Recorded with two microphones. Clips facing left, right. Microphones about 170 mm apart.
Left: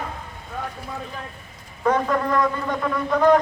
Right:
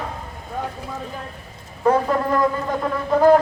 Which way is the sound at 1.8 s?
30° right (ahead or behind).